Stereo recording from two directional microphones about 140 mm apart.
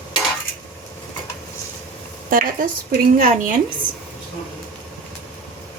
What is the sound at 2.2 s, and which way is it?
A woman's voice, 80° right.